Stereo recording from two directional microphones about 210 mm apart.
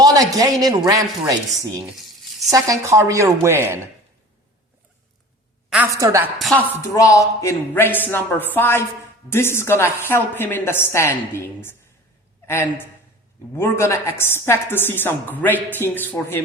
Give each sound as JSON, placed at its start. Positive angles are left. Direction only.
{"t": 0.0, "sound": "a man's voice", "side_deg": -15}
{"t": 1.8, "sound": "a sound", "side_deg": 0}
{"t": 2.5, "sound": "a woman's voice", "side_deg": -15}
{"t": 5.7, "sound": "a woman's voice", "side_deg": -10}
{"t": 6.8, "sound": "a woman's voice", "side_deg": 15}